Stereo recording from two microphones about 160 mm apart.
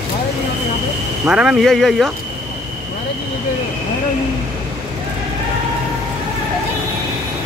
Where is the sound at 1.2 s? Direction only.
5° right (ahead or behind).